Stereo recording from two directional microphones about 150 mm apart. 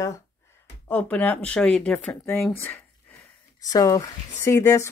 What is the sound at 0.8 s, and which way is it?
Speech, 10° left (ahead or behind).